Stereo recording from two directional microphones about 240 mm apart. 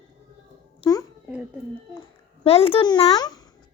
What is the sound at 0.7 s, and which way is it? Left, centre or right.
Babbling, centre.